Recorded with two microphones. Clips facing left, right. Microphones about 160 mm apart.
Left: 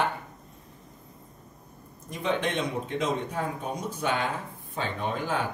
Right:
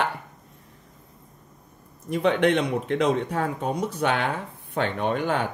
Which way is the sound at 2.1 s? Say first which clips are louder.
Right 8 dB; 70° right (ahead or behind).